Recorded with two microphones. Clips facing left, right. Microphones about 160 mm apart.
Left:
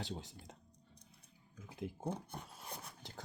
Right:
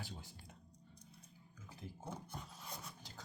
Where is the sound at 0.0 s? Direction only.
85° left.